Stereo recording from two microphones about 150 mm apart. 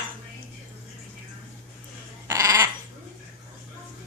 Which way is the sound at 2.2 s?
20° right (ahead or behind).